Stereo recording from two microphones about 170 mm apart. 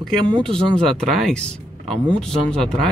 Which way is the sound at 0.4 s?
5° left (ahead or behind).